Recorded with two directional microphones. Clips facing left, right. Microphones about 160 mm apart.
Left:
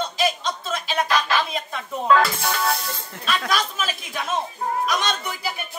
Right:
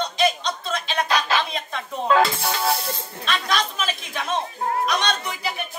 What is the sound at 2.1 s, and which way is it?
Music, 25° right (ahead or behind).